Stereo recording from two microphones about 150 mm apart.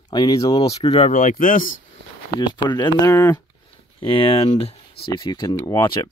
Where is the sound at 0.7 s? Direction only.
45° left (ahead or behind).